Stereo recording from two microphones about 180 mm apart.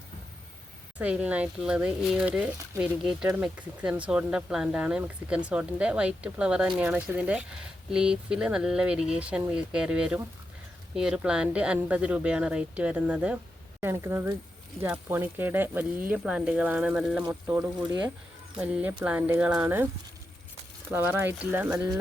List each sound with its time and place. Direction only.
0.9 s speech: 5° right (ahead or behind)
20.9 s speech: 10° right (ahead or behind)